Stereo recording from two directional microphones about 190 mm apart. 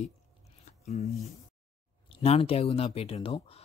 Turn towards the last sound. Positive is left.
turn(degrees=30)  # may be behind; listen again after turning